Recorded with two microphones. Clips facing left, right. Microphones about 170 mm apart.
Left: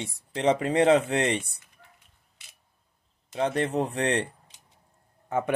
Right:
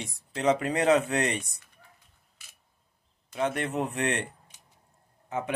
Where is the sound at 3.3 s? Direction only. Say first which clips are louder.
Left 3 dB; 30° left (ahead or behind).